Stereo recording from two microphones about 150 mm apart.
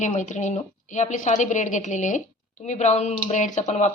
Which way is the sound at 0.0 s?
55° left (ahead or behind).